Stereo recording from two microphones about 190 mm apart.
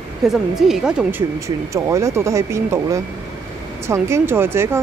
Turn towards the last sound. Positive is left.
turn(degrees=-10)  # may be behind; listen again after turning